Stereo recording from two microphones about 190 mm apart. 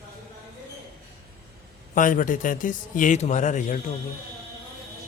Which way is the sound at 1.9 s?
45° left (ahead or behind).